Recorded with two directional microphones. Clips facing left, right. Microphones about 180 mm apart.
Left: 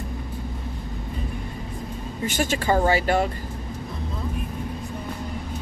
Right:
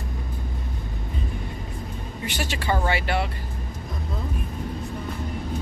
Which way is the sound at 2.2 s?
45° left (ahead or behind).